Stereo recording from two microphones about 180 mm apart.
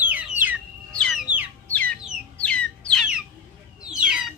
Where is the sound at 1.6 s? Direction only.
10° left (ahead or behind).